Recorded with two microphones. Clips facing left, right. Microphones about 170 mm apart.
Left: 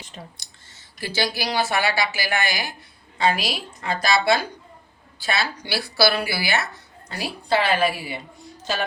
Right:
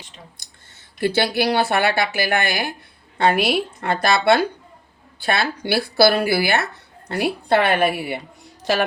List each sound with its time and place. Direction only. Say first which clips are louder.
0.4 s clicking: even; 50° right (ahead or behind)
0.9 s a woman's voice: right 7 dB; 60° right (ahead or behind)
8.7 s speech: right 7 dB; 75° right (ahead or behind)